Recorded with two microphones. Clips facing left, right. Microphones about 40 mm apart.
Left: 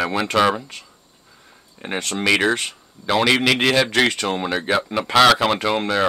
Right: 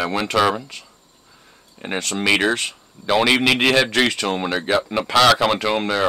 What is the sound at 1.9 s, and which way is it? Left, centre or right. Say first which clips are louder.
Speech: right 1 dB; centre.